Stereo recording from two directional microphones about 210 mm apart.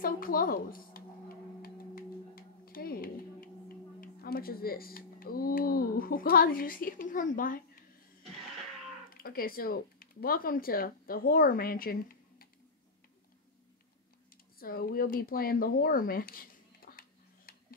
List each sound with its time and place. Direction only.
0.0 s tick-tock: 45° left (ahead or behind)
9.1 s speech: 45° left (ahead or behind)
14.3 s speech: 45° left (ahead or behind)
17.5 s a sound: 45° left (ahead or behind)